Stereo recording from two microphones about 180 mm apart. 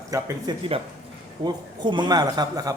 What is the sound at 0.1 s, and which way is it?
A man's voice, 20° right (ahead or behind).